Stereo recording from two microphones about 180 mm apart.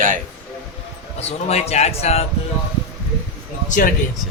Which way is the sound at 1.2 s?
35° left (ahead or behind).